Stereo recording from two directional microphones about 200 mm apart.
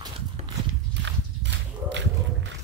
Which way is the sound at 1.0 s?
60° right (ahead or behind).